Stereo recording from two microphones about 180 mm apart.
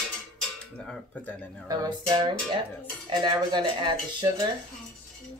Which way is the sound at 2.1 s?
25° right (ahead or behind).